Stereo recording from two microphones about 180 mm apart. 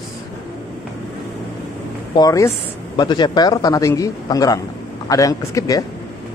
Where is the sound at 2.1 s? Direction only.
20° left (ahead or behind).